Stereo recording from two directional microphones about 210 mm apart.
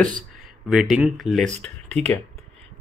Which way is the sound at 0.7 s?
Centre (ahead or behind).